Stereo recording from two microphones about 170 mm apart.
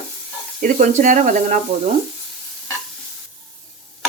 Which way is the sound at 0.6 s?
50° right (ahead or behind).